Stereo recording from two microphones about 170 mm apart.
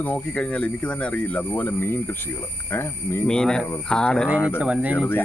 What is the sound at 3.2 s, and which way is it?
Speech, 5° left (ahead or behind).